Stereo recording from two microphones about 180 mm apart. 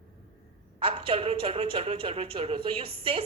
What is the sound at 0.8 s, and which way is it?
A man's voice, 30° right (ahead or behind).